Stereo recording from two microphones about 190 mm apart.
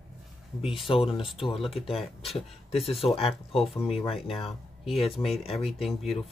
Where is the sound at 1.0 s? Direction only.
30° left (ahead or behind).